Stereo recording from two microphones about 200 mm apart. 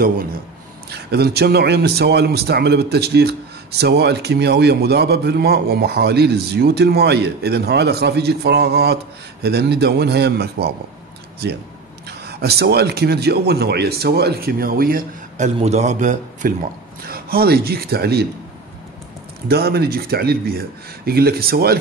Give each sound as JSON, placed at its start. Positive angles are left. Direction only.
{"t": 0.8, "sound": "speech", "side_deg": -55}
{"t": 12.1, "sound": "a man's voice", "side_deg": -55}
{"t": 19.4, "sound": "speech", "side_deg": -50}